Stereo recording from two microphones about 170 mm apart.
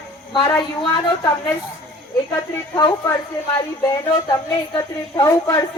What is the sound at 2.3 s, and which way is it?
Speech, 25° left (ahead or behind).